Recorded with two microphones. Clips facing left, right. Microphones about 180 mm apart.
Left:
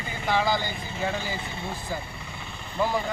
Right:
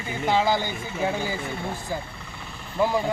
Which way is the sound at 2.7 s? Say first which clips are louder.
Right 3 dB; 15° right (ahead or behind).